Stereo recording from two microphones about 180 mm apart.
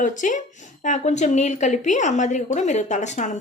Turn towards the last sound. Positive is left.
turn(degrees=40)  # may be behind; listen again after turning